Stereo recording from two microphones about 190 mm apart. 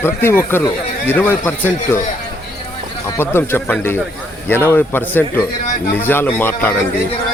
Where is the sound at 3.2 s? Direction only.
10° left (ahead or behind).